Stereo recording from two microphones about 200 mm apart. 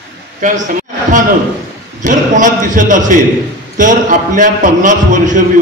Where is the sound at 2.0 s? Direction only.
40° right (ahead or behind).